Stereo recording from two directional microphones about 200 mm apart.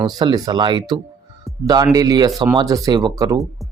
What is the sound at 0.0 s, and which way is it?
Speech, 20° right (ahead or behind).